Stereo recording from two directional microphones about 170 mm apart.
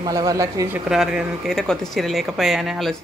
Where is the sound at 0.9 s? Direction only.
5° right (ahead or behind).